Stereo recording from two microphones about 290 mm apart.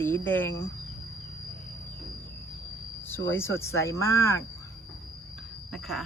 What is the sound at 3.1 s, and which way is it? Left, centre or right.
Speech, centre.